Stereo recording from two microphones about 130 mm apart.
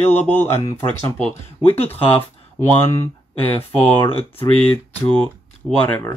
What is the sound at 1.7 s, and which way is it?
Speech, 50° left (ahead or behind).